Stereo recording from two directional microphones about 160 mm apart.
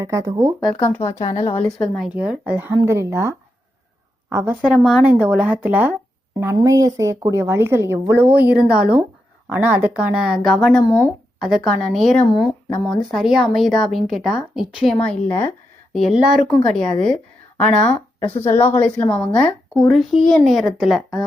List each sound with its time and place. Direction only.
0.0 s speech: 20° right (ahead or behind)
0.8 s a woman's voice: 10° left (ahead or behind)
1.8 s a woman's voice: centre (ahead or behind); by 4.5 s 15° right (ahead or behind)
4.6 s a woman's voice: 5° right (ahead or behind)
10.8 s a woman's voice: 15° left (ahead or behind)
11.3 s a woman's voice: centre (ahead or behind)
12.3 s a woman's voice: 25° left (ahead or behind)
13.1 s a woman's voice: centre (ahead or behind)
15.0 s speech: 10° left (ahead or behind)
16.0 s a woman's voice: centre (ahead or behind)
18.4 s a woman's voice: 15° left (ahead or behind); by 21.2 s centre (ahead or behind)